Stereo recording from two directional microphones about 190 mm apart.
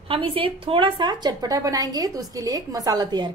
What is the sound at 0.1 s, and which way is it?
A woman's voice, 30° right (ahead or behind).